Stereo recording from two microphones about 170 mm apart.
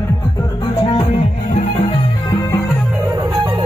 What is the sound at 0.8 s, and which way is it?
Music, 35° left (ahead or behind).